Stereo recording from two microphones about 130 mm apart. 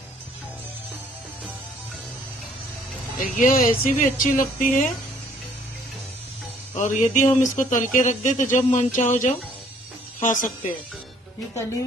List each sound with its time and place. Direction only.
3.2 s speech: 90° left
6.8 s speech: 70° left (ahead or behind)